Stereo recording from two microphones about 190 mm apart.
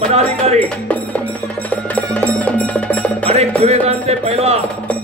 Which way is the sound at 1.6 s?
10° left (ahead or behind).